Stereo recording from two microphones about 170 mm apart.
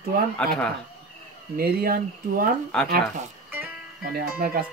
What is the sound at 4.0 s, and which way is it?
Speech, 60° right (ahead or behind).